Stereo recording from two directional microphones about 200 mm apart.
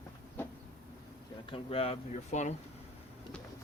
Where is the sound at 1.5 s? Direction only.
25° left (ahead or behind).